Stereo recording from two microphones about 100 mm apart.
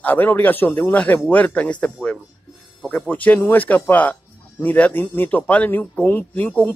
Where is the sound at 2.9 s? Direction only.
15° left (ahead or behind).